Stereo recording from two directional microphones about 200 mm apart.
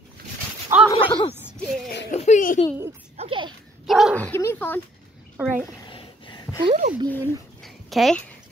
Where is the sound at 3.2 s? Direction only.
25° right (ahead or behind).